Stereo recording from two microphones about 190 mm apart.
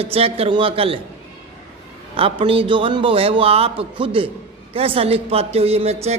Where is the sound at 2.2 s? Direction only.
30° right (ahead or behind).